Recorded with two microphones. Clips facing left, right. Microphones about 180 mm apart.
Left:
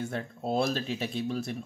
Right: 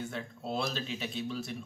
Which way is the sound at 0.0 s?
50° left (ahead or behind).